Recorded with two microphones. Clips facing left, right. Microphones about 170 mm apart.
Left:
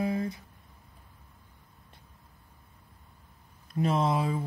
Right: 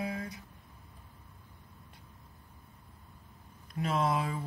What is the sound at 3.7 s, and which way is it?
Speech, 25° left (ahead or behind).